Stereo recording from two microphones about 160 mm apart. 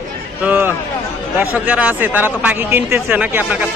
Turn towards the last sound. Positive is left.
turn(degrees=-10)  # may be behind; listen again after turning